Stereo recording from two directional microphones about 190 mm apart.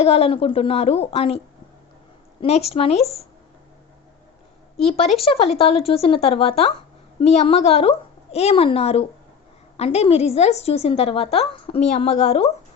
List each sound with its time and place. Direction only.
0.0 s a woman's voice: 30° left (ahead or behind)
2.4 s a woman's voice: 35° left (ahead or behind)
5.2 s a woman's voice: 30° left (ahead or behind)